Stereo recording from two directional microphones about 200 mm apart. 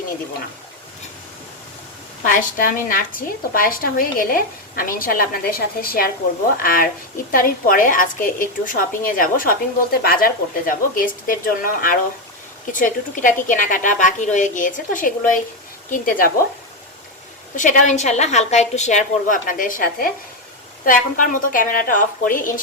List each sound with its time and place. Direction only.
2.2 s a woman's voice: 45° left (ahead or behind)
17.5 s a woman's voice: 40° left (ahead or behind)